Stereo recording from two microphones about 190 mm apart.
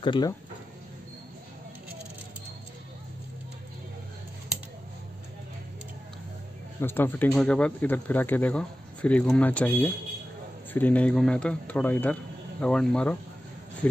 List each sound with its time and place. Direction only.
0.0 s speech: 25° left (ahead or behind)
6.8 s speech: 10° left (ahead or behind)